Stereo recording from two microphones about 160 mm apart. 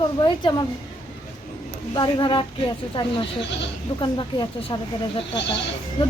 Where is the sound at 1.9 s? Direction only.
30° left (ahead or behind).